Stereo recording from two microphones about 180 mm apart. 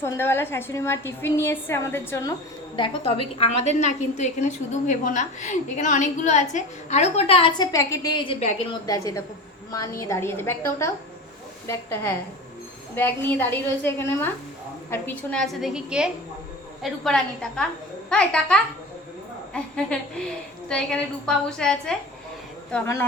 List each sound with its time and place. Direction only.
0.0 s a woman's voice: 15° left (ahead or behind)
2.7 s a woman's voice: 30° left (ahead or behind)
8.9 s a woman's voice: 20° left (ahead or behind); by 21.9 s 5° left (ahead or behind)